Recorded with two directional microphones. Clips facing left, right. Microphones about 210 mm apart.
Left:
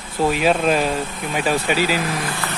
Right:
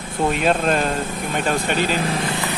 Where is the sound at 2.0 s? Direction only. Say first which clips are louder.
Right 2 dB; 25° right (ahead or behind).